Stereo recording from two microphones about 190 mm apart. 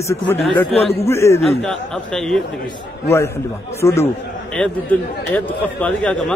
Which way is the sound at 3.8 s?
15° left (ahead or behind).